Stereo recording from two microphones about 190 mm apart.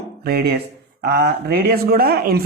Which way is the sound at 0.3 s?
55° right (ahead or behind).